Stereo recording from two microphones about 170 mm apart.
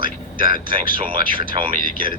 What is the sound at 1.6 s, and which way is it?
Speech, 35° right (ahead or behind).